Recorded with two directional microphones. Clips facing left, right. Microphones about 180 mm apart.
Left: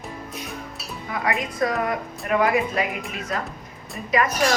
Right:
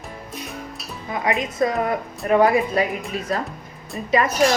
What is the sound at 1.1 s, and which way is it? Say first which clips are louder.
A woman's voice: right 3 dB; 20° right (ahead or behind).